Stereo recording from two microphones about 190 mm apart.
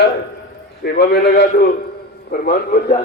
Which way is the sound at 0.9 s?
60° left (ahead or behind).